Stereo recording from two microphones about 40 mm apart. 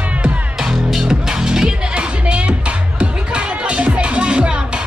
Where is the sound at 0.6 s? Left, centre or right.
Centre.